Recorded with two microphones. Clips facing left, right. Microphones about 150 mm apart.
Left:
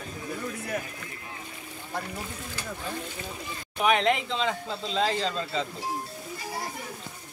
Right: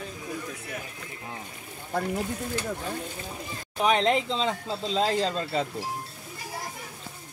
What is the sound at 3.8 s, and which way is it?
Speech, 30° right (ahead or behind).